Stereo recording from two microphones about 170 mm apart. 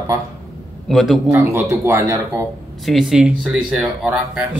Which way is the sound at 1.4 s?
15° right (ahead or behind).